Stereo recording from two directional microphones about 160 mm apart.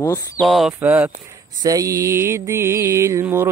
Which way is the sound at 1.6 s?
20° right (ahead or behind).